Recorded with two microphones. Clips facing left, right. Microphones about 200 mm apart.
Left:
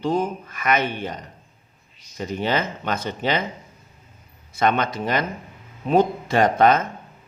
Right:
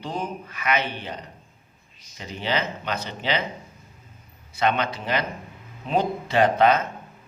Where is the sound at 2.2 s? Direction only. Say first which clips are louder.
Left 4 dB; 45° left (ahead or behind).